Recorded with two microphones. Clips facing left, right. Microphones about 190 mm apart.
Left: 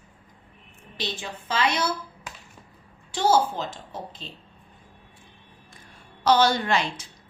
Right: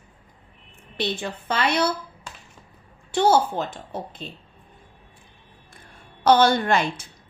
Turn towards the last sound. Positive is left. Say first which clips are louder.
# right 3 dB
turn(degrees=-50)  # may be behind; listen again after turning